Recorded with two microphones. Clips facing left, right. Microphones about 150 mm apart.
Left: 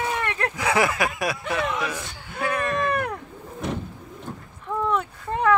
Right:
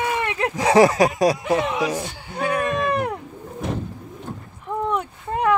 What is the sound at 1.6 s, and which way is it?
Speech, 20° right (ahead or behind).